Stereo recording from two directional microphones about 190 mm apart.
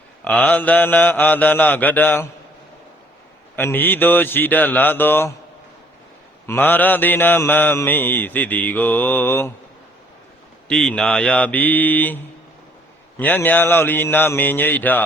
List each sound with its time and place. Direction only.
0.3 s mantra: 5° left (ahead or behind)
3.5 s mantra: 10° left (ahead or behind)
6.5 s mantra: 10° left (ahead or behind)
10.7 s mantra: 5° left (ahead or behind)